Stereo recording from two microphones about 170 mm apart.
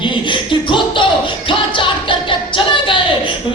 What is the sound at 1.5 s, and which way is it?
Music, 30° left (ahead or behind).